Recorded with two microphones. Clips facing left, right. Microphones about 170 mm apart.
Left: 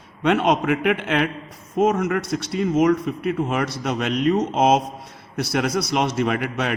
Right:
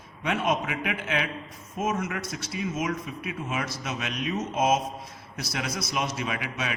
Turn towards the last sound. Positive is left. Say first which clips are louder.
# left 8 dB
turn(degrees=60)  # may be behind; listen again after turning